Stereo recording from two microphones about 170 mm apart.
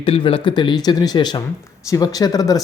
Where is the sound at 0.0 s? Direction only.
35° left (ahead or behind).